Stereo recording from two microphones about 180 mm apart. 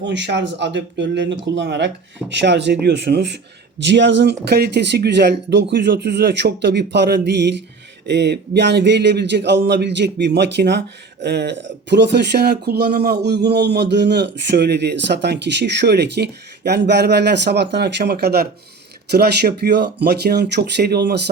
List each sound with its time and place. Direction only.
0.0 s speech: 75° right (ahead or behind)
4.4 s speech: 60° right (ahead or behind)